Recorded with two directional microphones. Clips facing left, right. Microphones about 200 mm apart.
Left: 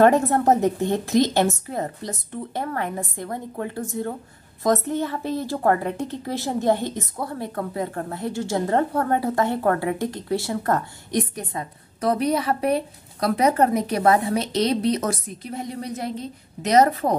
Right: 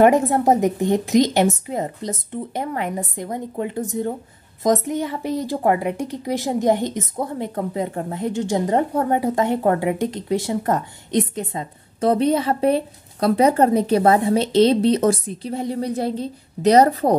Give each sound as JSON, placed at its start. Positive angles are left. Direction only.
{"t": 0.0, "sound": "a woman's voice", "side_deg": -15}